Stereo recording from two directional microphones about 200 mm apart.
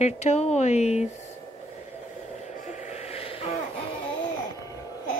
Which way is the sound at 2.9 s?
30° left (ahead or behind).